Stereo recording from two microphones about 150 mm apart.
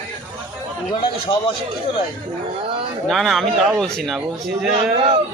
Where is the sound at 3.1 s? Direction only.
Centre (ahead or behind).